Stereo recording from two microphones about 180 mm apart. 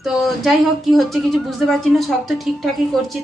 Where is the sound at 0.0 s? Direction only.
Centre (ahead or behind).